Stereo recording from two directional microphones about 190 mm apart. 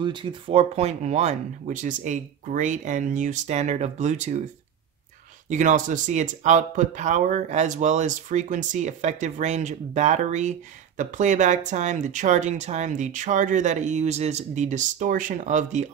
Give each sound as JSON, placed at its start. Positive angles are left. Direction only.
{"t": 0.0, "sound": "speech", "side_deg": -25}
{"t": 5.5, "sound": "speech", "side_deg": -40}